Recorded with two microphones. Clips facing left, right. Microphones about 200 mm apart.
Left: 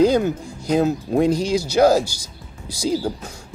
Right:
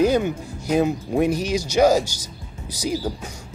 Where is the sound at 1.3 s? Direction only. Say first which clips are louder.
Left 3 dB; 10° left (ahead or behind).